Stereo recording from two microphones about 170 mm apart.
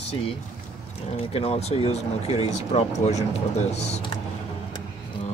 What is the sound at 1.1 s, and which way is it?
Speech, 35° left (ahead or behind).